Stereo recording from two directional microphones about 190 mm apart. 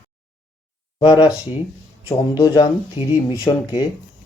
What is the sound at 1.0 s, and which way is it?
Speech, 25° left (ahead or behind).